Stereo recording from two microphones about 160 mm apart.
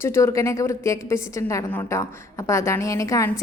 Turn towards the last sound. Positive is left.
turn(degrees=20)  # may be behind; listen again after turning